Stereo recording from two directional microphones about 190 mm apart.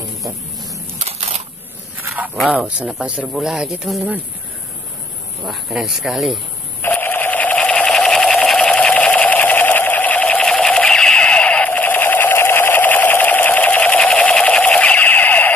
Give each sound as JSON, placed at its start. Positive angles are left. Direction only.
{"t": 0.9, "sound": "single-lens reflex camera", "side_deg": -35}
{"t": 2.0, "sound": "speech", "side_deg": -10}
{"t": 5.4, "sound": "speech", "side_deg": 0}
{"t": 6.8, "sound": "sewing machine", "side_deg": 10}